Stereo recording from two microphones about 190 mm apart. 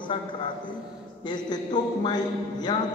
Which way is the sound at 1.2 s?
20° left (ahead or behind).